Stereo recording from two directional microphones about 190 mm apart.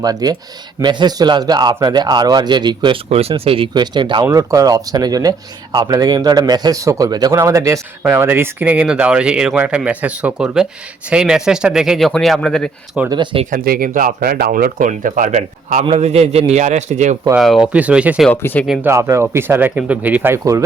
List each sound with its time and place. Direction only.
0.0 s speech: 20° right (ahead or behind); by 13.0 s 5° left (ahead or behind)
13.1 s speech: 25° right (ahead or behind)
13.4 s speech: 45° right (ahead or behind)
17.3 s speech: centre (ahead or behind)
18.3 s speech: 10° left (ahead or behind)
18.7 s speech: 10° right (ahead or behind)